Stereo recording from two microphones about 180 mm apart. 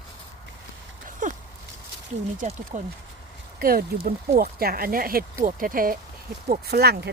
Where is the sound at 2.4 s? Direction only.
45° right (ahead or behind).